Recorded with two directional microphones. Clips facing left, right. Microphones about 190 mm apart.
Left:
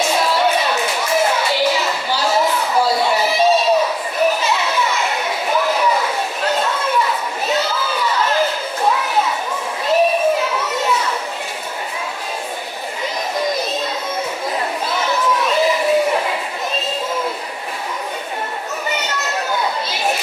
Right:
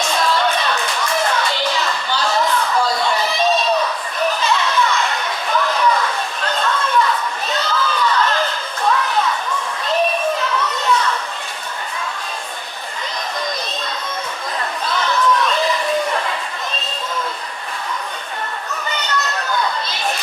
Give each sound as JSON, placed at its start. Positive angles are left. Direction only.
{"t": 0.0, "sound": "a sound", "side_deg": 5}
{"t": 9.8, "sound": "children playing", "side_deg": 5}
{"t": 14.8, "sound": "chatter", "side_deg": 5}
{"t": 18.9, "sound": "children playing", "side_deg": 5}